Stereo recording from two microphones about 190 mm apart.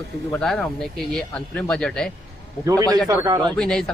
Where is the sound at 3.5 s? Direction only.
5° left (ahead or behind).